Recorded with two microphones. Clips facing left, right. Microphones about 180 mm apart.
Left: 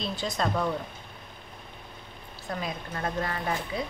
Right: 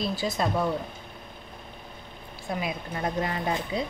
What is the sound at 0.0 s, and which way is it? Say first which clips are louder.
Speech: right 4 dB; 5° right (ahead or behind).